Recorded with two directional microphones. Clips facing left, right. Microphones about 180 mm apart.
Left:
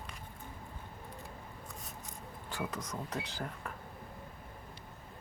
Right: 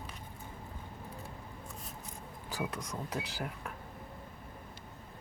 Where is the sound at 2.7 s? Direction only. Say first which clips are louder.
Right 1 dB; centre (ahead or behind).